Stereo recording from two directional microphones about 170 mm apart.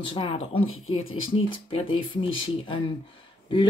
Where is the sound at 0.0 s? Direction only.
30° left (ahead or behind).